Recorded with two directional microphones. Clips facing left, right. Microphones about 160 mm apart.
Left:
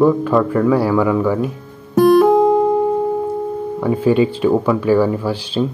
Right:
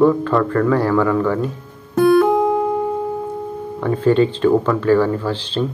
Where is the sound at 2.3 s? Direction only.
20° left (ahead or behind).